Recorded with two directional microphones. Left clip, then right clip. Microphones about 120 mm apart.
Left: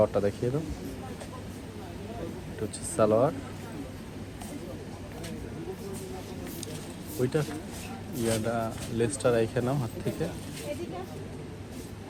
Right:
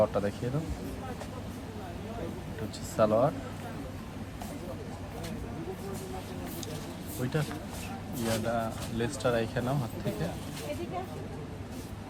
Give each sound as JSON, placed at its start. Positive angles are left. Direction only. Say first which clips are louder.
{"t": 0.0, "sound": "speech", "louder": "left 3 dB", "side_deg": -15}
{"t": 2.9, "sound": "speech", "louder": "left 2 dB", "side_deg": -5}
{"t": 7.2, "sound": "speech", "louder": "left 5 dB", "side_deg": 0}